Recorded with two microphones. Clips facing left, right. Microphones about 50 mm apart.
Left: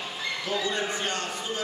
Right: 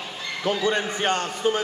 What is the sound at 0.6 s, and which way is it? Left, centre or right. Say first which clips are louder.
A man's voice: right 5 dB; right.